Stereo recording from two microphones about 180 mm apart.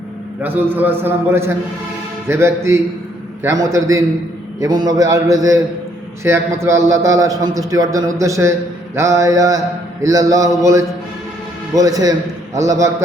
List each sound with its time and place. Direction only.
0.4 s a man's voice: 10° right (ahead or behind)